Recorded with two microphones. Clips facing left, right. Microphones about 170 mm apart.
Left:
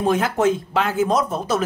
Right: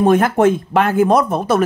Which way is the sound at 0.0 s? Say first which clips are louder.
Right 6 dB; 55° right (ahead or behind).